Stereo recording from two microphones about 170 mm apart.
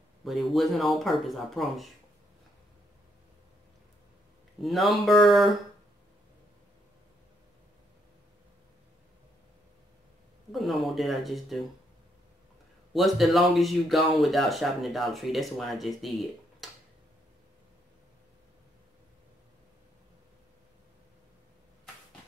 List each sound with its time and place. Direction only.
0.2 s speech: centre (ahead or behind)
4.6 s speech: centre (ahead or behind)
10.5 s speech: centre (ahead or behind)
12.9 s speech: centre (ahead or behind)